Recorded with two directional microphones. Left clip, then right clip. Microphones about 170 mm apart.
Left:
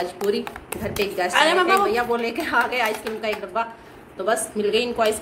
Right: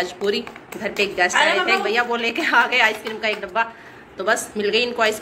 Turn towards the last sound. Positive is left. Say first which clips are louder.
# right 1 dB
turn(degrees=5)  # may be behind; listen again after turning